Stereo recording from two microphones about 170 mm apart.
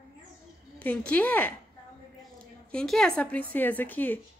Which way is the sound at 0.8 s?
10° left (ahead or behind).